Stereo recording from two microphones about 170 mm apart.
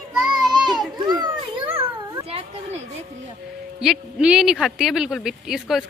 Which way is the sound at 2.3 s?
40° right (ahead or behind).